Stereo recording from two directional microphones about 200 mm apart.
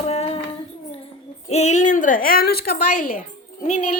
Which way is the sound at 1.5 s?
35° left (ahead or behind).